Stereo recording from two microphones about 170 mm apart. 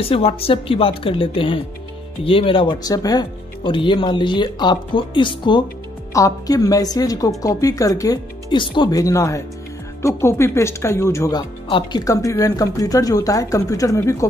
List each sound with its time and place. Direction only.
0.0 s speech: 35° left (ahead or behind); by 14.2 s 20° left (ahead or behind)